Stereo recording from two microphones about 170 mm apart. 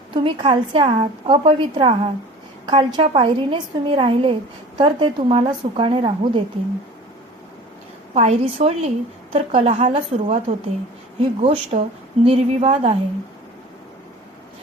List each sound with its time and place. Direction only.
0.1 s a woman's voice: 30° right (ahead or behind)
8.1 s a woman's voice: 40° right (ahead or behind)